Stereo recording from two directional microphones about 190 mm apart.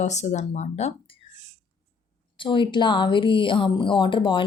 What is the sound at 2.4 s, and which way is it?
A woman's voice, 25° left (ahead or behind).